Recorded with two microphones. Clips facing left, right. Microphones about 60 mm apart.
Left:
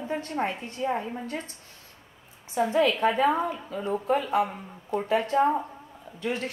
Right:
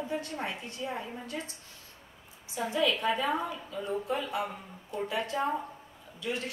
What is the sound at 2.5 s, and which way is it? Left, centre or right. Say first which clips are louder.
A woman's voice: left 6 dB; left.